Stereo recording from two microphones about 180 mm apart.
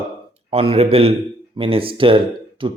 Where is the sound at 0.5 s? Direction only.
30° right (ahead or behind).